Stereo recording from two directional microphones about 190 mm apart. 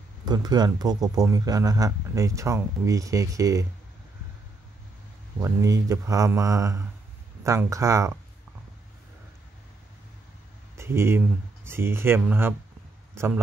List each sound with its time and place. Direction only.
0.2 s speech: 20° right (ahead or behind)
5.4 s speech: 15° right (ahead or behind)
10.8 s a man's voice: 15° right (ahead or behind)